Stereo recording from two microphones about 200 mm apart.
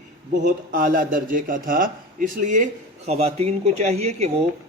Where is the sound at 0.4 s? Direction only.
45° right (ahead or behind).